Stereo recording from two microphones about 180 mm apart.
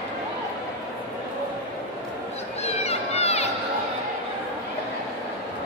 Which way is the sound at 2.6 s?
35° left (ahead or behind).